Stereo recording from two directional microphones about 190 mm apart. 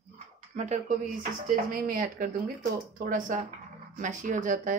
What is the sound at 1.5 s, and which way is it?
Speech, 50° right (ahead or behind).